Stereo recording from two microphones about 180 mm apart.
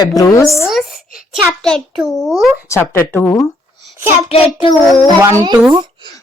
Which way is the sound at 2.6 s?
15° left (ahead or behind).